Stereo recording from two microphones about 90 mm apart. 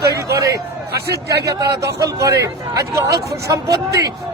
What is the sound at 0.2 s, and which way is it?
A man's voice, 35° right (ahead or behind).